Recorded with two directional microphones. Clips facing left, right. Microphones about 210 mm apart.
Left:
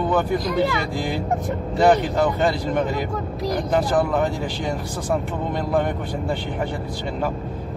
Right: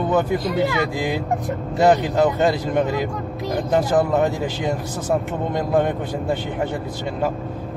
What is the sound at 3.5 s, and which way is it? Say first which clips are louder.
Speech: right 2 dB; 25° right (ahead or behind).